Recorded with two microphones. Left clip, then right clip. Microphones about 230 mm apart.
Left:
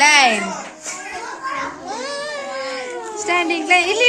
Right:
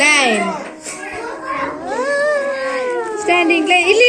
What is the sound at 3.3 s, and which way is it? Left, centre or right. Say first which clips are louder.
Speech: right 3 dB; left.